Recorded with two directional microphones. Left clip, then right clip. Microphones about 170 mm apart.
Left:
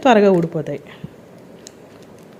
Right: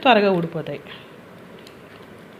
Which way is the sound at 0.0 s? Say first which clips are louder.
Left 3 dB; 55° left (ahead or behind).